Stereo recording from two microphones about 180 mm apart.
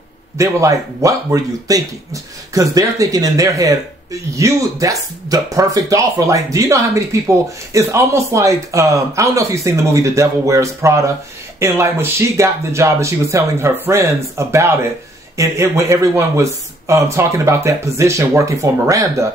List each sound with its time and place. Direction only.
0.4 s speech: 15° right (ahead or behind)